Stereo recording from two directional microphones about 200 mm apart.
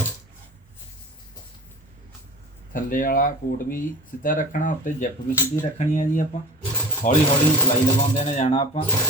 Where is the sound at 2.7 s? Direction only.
40° left (ahead or behind).